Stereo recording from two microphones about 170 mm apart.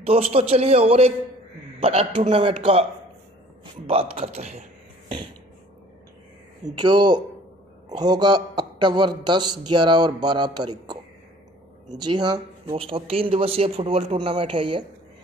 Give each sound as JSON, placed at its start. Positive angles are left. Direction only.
{"t": 0.0, "sound": "speech", "side_deg": -35}
{"t": 6.8, "sound": "speech", "side_deg": -25}
{"t": 12.0, "sound": "speech", "side_deg": -25}